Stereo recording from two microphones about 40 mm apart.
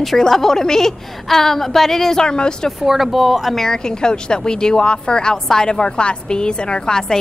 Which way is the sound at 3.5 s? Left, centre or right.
Centre.